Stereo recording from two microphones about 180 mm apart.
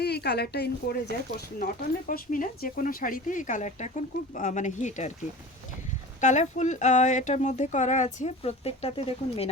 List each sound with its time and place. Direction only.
0.0 s a woman's voice: 65° left (ahead or behind)
1.5 s speech: 50° left (ahead or behind)
6.1 s speech: 40° left (ahead or behind)